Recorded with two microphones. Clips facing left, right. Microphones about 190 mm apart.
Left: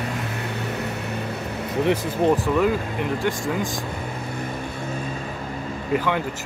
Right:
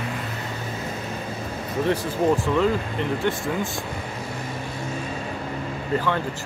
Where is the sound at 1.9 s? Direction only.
15° left (ahead or behind).